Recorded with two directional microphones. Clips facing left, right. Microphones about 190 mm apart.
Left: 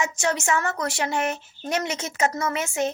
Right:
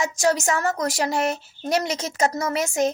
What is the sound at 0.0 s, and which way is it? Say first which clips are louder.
A woman's voice: right 4 dB; 35° right (ahead or behind).